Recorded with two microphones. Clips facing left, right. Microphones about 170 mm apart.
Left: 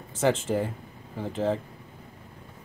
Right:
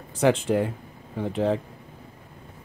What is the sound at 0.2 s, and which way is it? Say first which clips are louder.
Speech: right 3 dB; centre (ahead or behind).